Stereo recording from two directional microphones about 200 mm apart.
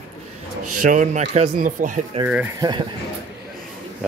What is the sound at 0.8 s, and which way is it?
Speech, 40° right (ahead or behind).